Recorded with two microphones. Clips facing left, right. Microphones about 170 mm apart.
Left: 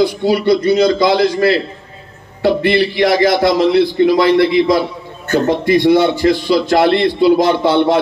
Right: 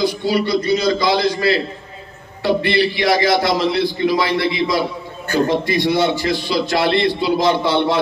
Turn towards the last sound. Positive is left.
turn(degrees=55)  # may be behind; listen again after turning